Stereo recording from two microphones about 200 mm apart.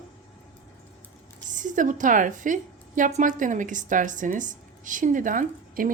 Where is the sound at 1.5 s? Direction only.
40° right (ahead or behind).